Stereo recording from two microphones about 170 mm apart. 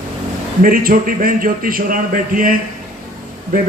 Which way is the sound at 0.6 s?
55° right (ahead or behind).